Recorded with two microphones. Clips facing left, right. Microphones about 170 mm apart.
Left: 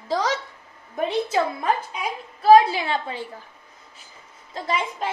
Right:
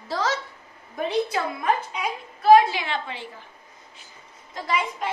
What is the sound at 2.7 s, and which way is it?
Speech, 35° left (ahead or behind).